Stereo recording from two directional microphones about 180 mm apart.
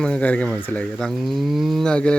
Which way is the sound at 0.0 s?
5° left (ahead or behind).